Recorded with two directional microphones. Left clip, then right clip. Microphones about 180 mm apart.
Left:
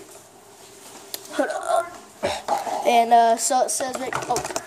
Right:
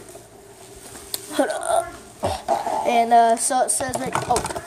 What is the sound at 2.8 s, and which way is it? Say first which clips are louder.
Speech: even; 25° left (ahead or behind).